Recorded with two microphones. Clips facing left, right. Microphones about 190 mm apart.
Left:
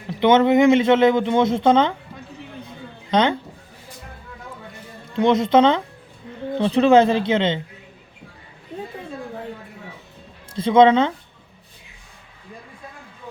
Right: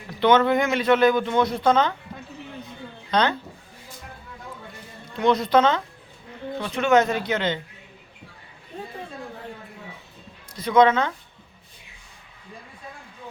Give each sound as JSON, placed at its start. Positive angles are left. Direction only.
{"t": 0.1, "sound": "speech", "side_deg": 20}
{"t": 3.1, "sound": "speech", "side_deg": 20}
{"t": 5.1, "sound": "speech", "side_deg": 20}
{"t": 6.6, "sound": "speech", "side_deg": 30}
{"t": 10.5, "sound": "speech", "side_deg": 25}